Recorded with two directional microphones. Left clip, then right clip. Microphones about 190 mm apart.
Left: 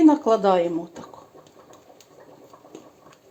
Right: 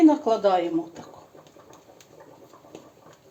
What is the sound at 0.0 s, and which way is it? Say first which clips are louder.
Speech: left 2 dB; 40° left (ahead or behind).